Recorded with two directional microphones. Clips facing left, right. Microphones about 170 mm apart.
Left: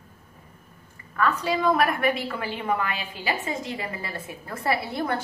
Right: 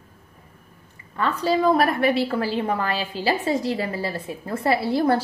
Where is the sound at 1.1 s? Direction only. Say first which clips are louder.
Right 3 dB; 30° right (ahead or behind).